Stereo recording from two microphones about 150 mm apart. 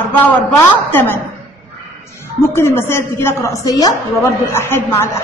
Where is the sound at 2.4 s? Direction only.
15° left (ahead or behind).